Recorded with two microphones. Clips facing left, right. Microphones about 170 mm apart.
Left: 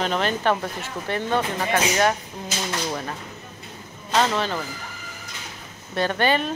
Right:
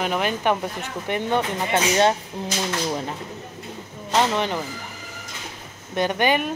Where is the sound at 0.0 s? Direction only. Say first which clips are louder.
Even; 10° right (ahead or behind).